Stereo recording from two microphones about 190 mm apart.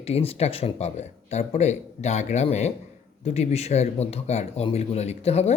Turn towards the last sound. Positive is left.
turn(degrees=35)  # may be behind; listen again after turning